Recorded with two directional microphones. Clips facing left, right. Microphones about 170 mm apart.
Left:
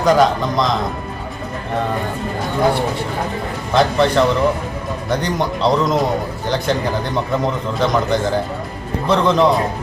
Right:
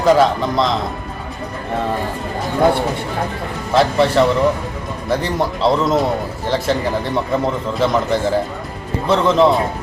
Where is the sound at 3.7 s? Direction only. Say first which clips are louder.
Right 1 dB; centre (ahead or behind).